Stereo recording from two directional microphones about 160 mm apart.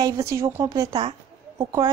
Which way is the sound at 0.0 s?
20° right (ahead or behind).